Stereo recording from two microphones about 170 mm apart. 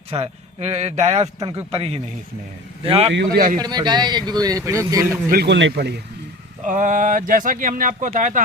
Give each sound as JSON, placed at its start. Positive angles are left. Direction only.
{"t": 0.1, "sound": "a man's voice", "side_deg": -40}
{"t": 3.1, "sound": "a man's voice", "side_deg": -90}
{"t": 3.6, "sound": "a man's voice", "side_deg": -25}
{"t": 5.3, "sound": "a man's voice", "side_deg": -80}
{"t": 6.7, "sound": "speech", "side_deg": -50}